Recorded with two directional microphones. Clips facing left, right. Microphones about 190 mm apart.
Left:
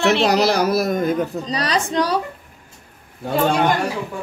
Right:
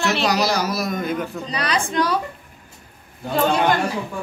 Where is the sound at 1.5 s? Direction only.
35° left (ahead or behind).